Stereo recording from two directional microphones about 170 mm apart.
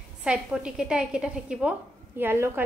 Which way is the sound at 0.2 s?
5° right (ahead or behind).